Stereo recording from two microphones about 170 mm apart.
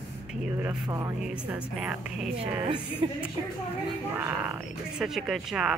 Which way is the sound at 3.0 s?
30° right (ahead or behind).